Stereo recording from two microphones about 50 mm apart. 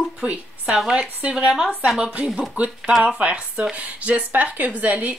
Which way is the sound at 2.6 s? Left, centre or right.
Right.